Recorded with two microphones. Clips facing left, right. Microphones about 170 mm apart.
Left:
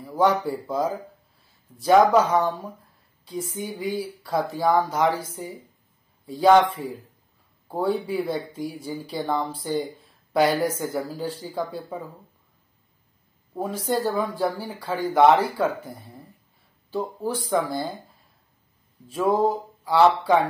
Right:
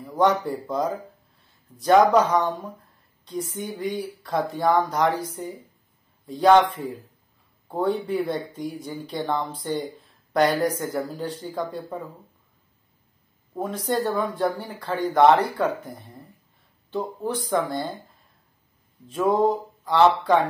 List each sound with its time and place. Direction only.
0.0 s a man's voice: 5° left (ahead or behind)
7.6 s speech: 5° left (ahead or behind)
13.6 s speech: 5° left (ahead or behind)
19.0 s speech: 5° left (ahead or behind)